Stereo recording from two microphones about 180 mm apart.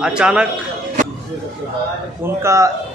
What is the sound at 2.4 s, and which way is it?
Speech, 15° right (ahead or behind).